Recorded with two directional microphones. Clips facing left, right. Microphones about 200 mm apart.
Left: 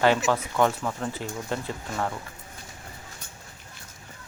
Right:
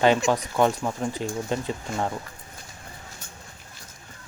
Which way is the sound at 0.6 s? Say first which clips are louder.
Right 2 dB; 15° right (ahead or behind).